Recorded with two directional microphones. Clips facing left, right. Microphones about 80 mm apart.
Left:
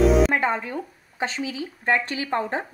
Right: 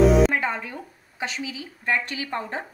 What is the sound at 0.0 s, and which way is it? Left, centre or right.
Music, centre.